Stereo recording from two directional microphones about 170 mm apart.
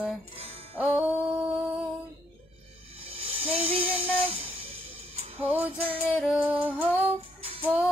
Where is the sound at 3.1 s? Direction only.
35° right (ahead or behind).